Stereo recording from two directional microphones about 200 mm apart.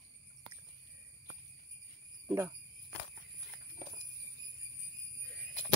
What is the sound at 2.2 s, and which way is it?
Speech, 15° right (ahead or behind).